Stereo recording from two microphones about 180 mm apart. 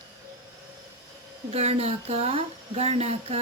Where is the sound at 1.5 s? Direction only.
35° right (ahead or behind).